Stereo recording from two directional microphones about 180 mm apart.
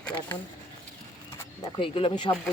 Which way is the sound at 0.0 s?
10° left (ahead or behind).